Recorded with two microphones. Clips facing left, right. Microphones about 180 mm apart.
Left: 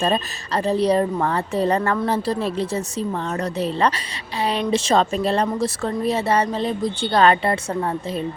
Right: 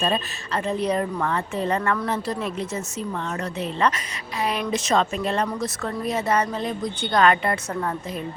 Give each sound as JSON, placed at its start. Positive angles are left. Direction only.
{"t": 0.0, "sound": "speech", "side_deg": 40}